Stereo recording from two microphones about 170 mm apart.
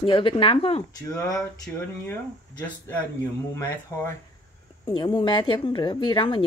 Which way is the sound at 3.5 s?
15° left (ahead or behind).